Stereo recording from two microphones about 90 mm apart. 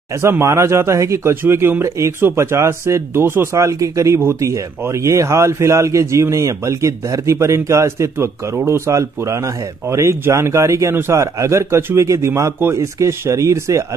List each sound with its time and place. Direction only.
0.2 s a man's voice: 30° right (ahead or behind)